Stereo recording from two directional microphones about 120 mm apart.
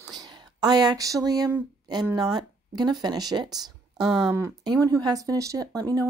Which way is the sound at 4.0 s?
5° right (ahead or behind).